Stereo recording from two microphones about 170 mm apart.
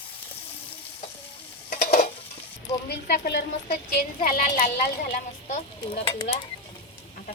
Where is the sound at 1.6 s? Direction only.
60° left (ahead or behind).